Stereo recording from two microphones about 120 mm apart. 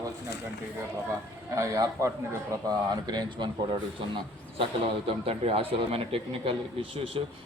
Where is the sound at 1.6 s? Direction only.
30° right (ahead or behind).